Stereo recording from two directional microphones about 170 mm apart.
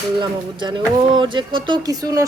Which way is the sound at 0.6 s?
30° right (ahead or behind).